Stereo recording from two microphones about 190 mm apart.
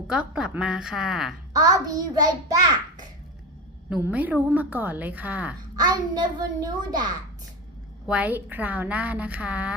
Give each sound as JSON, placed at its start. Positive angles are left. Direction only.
{"t": 0.1, "sound": "a woman's voice", "side_deg": -5}
{"t": 1.5, "sound": "a child's voice", "side_deg": -20}
{"t": 3.8, "sound": "a woman's voice", "side_deg": -5}
{"t": 5.7, "sound": "a child's voice", "side_deg": -20}
{"t": 8.0, "sound": "a woman's voice", "side_deg": -5}